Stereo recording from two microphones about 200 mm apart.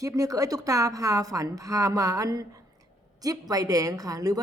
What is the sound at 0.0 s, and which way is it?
A woman's voice, 15° right (ahead or behind).